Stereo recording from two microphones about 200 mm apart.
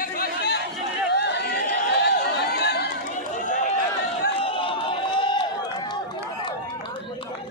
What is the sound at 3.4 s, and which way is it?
Run, 40° left (ahead or behind).